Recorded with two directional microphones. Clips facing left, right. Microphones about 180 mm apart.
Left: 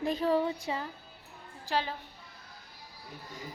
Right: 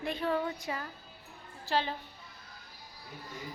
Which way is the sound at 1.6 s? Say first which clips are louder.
Right 1 dB; 10° left (ahead or behind).